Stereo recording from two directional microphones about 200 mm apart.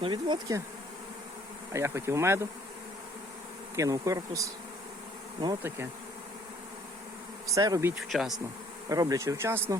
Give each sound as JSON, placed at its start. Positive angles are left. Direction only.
{"t": 0.0, "sound": "bee", "side_deg": -25}
{"t": 1.7, "sound": "speech", "side_deg": -15}
{"t": 3.8, "sound": "speech", "side_deg": -15}
{"t": 7.5, "sound": "speech", "side_deg": -15}
{"t": 7.9, "sound": "speech", "side_deg": 0}
{"t": 8.9, "sound": "speech", "side_deg": -15}